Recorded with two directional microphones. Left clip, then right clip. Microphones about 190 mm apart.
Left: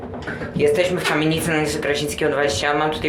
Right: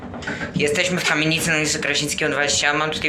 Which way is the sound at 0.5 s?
10° left (ahead or behind).